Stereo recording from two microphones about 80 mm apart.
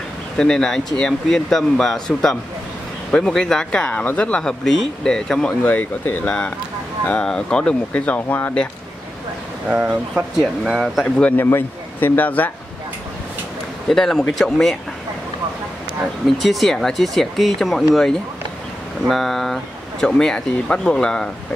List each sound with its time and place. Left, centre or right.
0.4 s speech: centre
5.6 s speech: centre
9.7 s speech: centre
11.1 s speech: left
13.8 s speech: centre
16.3 s speech: centre
19.0 s speech: centre